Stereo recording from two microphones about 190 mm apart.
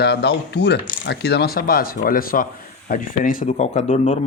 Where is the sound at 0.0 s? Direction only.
60° left (ahead or behind).